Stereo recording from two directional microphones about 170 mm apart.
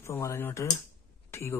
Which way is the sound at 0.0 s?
15° left (ahead or behind).